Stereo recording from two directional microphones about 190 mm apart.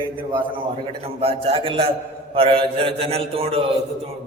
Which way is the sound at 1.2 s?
30° right (ahead or behind).